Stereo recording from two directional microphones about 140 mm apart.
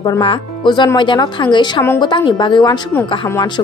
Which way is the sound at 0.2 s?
35° left (ahead or behind).